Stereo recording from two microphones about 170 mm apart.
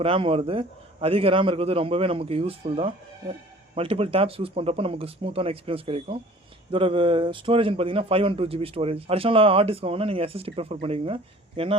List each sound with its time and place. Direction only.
0.0 s a man's voice: 35° right (ahead or behind)